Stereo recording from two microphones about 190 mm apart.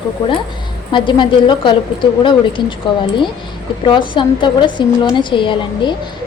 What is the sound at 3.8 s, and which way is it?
Speech, 25° left (ahead or behind).